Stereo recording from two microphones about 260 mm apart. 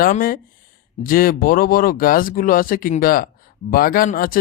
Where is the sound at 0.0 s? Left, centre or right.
Left.